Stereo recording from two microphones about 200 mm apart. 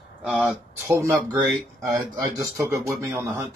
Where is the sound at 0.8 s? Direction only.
15° right (ahead or behind).